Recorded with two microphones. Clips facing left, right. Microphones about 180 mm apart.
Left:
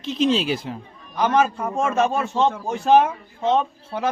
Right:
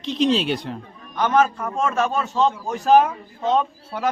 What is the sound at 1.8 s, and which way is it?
Speech, 25° left (ahead or behind).